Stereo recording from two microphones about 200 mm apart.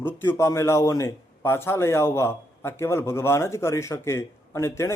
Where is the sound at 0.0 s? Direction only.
10° left (ahead or behind).